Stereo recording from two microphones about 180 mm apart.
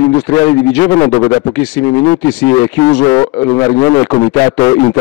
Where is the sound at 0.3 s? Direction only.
15° left (ahead or behind).